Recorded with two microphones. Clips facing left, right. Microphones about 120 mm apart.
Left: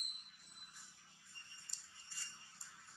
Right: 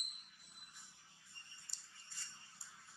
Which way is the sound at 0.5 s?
Centre (ahead or behind).